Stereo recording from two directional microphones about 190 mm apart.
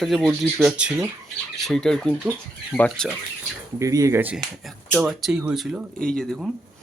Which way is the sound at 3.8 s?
15° right (ahead or behind).